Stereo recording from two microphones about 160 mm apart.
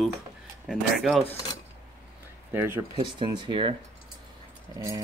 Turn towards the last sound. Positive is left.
turn(degrees=-20)  # may be behind; listen again after turning